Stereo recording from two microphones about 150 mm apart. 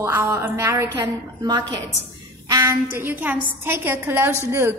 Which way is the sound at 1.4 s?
30° right (ahead or behind).